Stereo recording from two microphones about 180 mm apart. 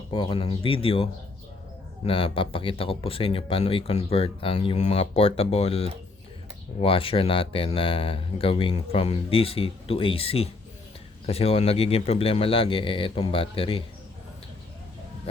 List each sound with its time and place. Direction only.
0.1 s speech: 30° left (ahead or behind)
2.0 s speech: 30° left (ahead or behind)